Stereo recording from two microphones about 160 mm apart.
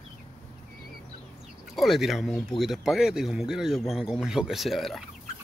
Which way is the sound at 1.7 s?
Centre (ahead or behind).